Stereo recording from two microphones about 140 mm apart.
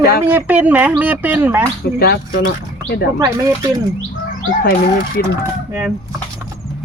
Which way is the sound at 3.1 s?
25° right (ahead or behind).